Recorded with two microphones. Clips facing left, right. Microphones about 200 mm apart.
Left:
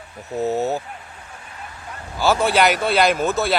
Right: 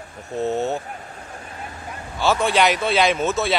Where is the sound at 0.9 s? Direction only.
45° right (ahead or behind).